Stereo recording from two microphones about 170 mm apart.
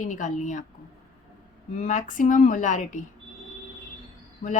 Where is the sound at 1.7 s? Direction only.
50° left (ahead or behind).